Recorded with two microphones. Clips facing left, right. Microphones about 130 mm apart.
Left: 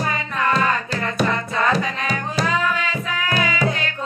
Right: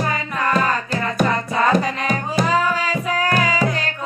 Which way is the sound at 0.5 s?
45° right (ahead or behind).